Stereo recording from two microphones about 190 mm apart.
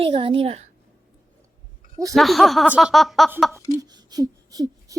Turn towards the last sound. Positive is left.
turn(degrees=-20)  # may be behind; listen again after turning